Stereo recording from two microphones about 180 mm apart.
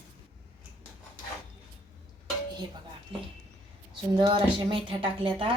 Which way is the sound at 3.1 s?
30° right (ahead or behind).